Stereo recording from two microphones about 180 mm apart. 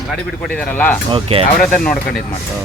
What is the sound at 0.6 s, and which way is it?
Speech, 10° left (ahead or behind).